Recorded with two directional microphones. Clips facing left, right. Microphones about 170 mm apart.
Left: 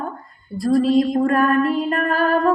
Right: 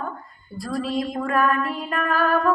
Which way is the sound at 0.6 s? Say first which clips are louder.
Left 11 dB; 40° left (ahead or behind).